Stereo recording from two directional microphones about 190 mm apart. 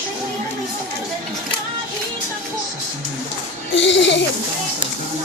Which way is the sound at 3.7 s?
70° left (ahead or behind).